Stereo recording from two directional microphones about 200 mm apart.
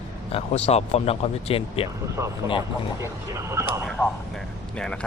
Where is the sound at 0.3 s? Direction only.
30° left (ahead or behind).